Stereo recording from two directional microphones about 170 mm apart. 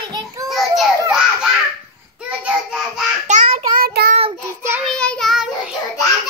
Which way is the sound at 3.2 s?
45° right (ahead or behind).